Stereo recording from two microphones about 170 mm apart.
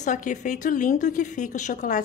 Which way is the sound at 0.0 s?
45° left (ahead or behind).